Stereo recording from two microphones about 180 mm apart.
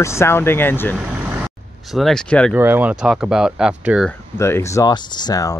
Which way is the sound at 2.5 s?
10° right (ahead or behind).